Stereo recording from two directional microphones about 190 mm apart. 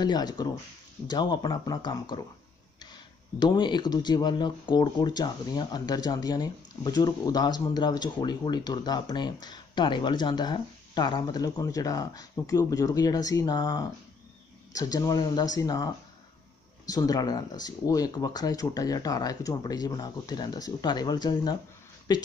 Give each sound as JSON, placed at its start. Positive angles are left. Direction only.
{"t": 0.0, "sound": "speech", "side_deg": 20}